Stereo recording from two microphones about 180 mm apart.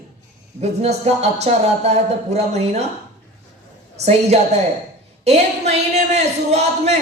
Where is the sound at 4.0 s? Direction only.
35° right (ahead or behind).